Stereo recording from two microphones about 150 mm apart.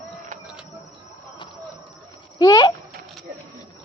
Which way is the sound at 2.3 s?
30° left (ahead or behind).